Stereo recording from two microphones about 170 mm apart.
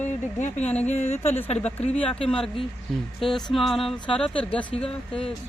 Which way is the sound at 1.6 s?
10° left (ahead or behind).